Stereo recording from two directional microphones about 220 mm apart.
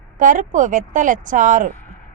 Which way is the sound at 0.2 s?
35° right (ahead or behind).